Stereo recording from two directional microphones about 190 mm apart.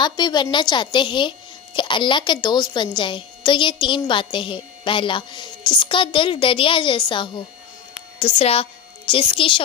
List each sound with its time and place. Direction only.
0.0 s a woman's voice: 20° left (ahead or behind)